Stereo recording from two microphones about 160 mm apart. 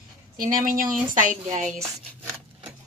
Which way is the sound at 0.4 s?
60° right (ahead or behind).